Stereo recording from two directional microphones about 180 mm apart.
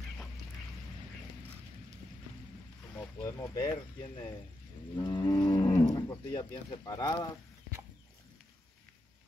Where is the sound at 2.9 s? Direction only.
15° left (ahead or behind).